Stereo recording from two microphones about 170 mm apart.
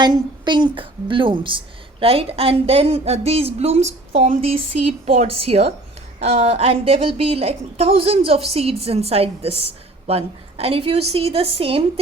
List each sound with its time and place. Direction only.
0.0 s a woman's voice: 25° right (ahead or behind)